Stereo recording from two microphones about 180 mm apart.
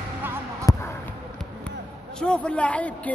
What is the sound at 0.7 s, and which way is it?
Basketball bounce, 20° left (ahead or behind).